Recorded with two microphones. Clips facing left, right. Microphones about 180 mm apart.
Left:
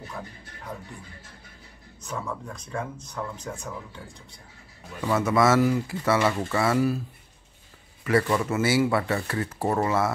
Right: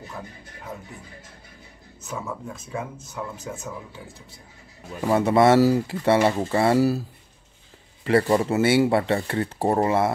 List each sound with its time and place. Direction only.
2.0 s speech: 5° right (ahead or behind)
5.0 s speech: 30° right (ahead or behind)
8.0 s speech: 30° right (ahead or behind)